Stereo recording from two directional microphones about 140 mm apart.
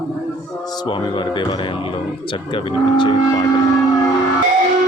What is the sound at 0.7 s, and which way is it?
Speech, 35° left (ahead or behind).